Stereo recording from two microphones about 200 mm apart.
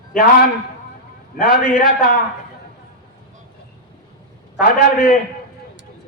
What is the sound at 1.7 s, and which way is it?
Speech, 45° left (ahead or behind).